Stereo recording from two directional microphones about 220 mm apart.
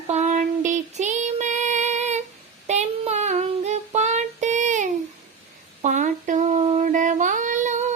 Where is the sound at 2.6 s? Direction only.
30° right (ahead or behind).